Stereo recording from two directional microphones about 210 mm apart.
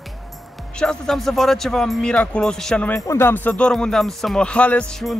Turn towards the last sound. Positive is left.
turn(degrees=5)  # may be behind; listen again after turning